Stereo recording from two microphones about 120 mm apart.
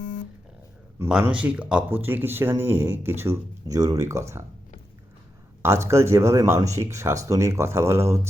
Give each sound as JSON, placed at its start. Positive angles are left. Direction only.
{"t": 1.2, "sound": "speech", "side_deg": -10}
{"t": 5.6, "sound": "speech", "side_deg": -25}